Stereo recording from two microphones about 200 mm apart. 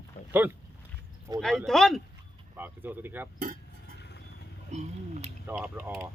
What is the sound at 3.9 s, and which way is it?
Vehicle, 55° left (ahead or behind).